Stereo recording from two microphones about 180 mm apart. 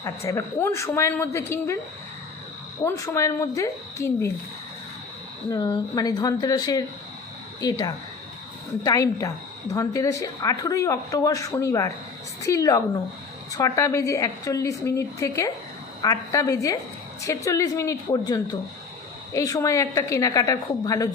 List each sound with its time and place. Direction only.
0.0 s a woman's voice: 15° left (ahead or behind)
2.8 s a woman's voice: 15° left (ahead or behind)
5.5 s a woman's voice: 20° left (ahead or behind)